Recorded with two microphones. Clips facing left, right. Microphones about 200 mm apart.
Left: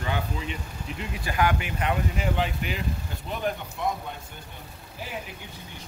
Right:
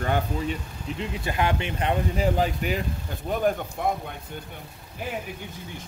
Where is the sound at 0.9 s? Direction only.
25° right (ahead or behind); by 2.8 s 40° right (ahead or behind).